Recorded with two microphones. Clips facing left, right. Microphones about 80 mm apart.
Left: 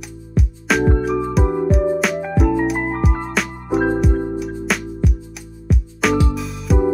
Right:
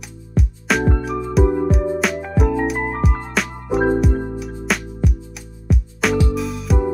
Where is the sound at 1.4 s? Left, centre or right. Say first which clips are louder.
Right 2 dB; centre.